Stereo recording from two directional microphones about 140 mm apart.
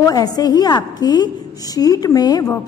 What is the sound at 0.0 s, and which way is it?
A woman's voice, 25° left (ahead or behind).